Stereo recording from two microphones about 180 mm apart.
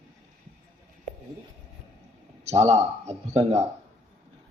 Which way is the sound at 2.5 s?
35° right (ahead or behind).